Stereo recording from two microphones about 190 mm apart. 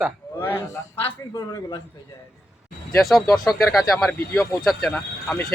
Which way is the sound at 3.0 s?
Centre (ahead or behind).